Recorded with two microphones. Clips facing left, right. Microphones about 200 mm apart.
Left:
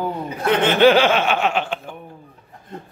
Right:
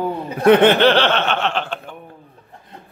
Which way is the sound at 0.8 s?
10° left (ahead or behind).